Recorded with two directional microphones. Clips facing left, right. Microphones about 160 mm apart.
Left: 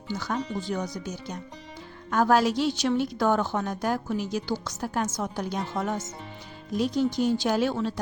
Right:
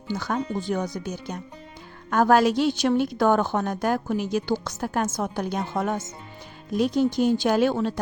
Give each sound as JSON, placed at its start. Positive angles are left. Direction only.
{"t": 0.1, "sound": "a woman's voice", "side_deg": -55}